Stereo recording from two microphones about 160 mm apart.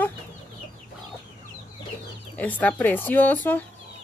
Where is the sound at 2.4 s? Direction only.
10° left (ahead or behind).